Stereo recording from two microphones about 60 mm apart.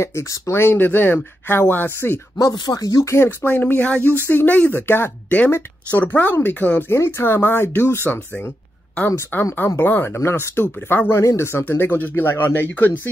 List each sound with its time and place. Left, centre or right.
0.0 s speech: left
0.7 s speech: left
2.3 s speech: left
3.3 s speech: left
6.9 s speech: left
11.1 s speech: left
11.6 s speech: left